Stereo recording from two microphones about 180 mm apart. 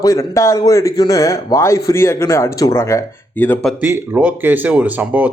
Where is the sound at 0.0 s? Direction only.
15° left (ahead or behind).